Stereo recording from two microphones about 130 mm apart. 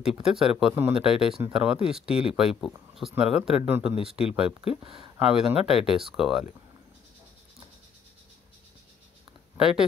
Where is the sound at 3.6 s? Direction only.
15° right (ahead or behind).